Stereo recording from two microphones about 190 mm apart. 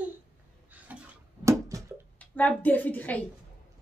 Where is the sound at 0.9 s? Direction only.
10° right (ahead or behind).